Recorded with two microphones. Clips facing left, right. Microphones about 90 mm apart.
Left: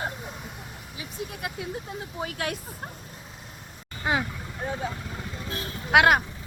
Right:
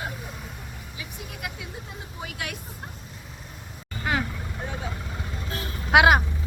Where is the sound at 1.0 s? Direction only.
30° left (ahead or behind).